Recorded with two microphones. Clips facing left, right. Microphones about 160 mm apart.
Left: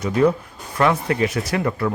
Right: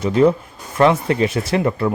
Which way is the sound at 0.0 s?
25° right (ahead or behind).